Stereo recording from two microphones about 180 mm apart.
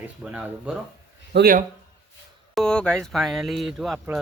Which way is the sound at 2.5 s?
5° left (ahead or behind).